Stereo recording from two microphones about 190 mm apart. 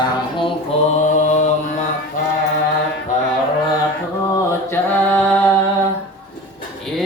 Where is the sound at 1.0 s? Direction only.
40° left (ahead or behind).